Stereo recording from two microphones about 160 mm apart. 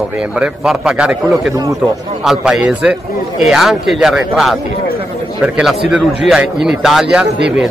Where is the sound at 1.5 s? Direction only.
20° right (ahead or behind).